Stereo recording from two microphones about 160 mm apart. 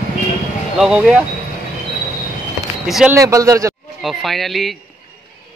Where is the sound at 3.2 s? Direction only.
20° right (ahead or behind).